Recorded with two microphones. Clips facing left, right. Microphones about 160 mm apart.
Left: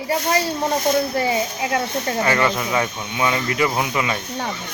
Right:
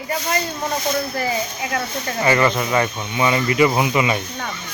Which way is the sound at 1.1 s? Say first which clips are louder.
Left 3 dB; 25° left (ahead or behind).